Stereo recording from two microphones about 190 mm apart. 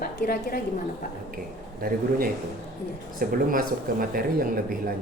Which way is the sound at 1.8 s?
50° right (ahead or behind).